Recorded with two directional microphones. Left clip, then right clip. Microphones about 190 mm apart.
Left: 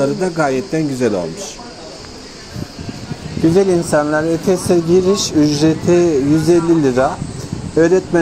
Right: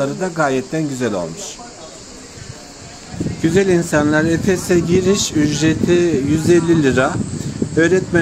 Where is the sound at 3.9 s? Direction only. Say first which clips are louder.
Left 1 dB; 5° right (ahead or behind).